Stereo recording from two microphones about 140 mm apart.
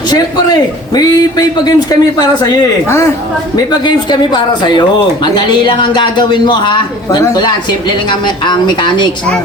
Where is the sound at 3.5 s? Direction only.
30° left (ahead or behind).